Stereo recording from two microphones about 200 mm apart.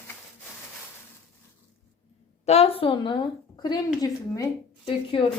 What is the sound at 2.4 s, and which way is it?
A woman's voice, 30° left (ahead or behind).